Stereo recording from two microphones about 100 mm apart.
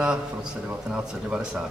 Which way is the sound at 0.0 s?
10° right (ahead or behind).